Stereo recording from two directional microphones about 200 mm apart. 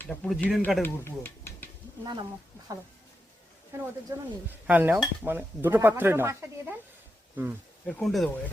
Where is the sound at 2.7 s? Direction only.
15° right (ahead or behind).